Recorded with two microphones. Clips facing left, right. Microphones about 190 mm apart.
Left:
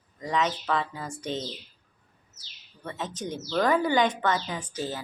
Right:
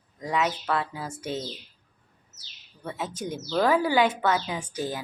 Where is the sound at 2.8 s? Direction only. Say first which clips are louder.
Right 1 dB; 10° right (ahead or behind).